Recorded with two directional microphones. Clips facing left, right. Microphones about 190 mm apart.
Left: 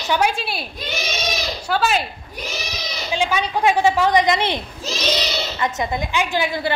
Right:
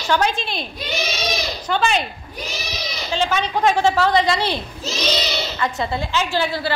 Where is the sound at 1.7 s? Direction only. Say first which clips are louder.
Even; 5° left (ahead or behind).